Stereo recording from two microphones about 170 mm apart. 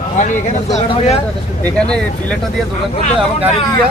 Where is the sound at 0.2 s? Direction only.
45° left (ahead or behind).